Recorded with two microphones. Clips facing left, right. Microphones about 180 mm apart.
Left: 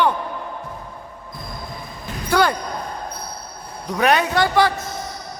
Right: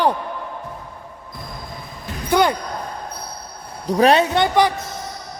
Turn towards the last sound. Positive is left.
turn(degrees=-20)  # may be behind; listen again after turning